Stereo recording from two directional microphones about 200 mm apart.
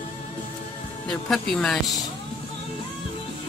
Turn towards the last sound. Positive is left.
turn(degrees=0)  # may be behind; listen again after turning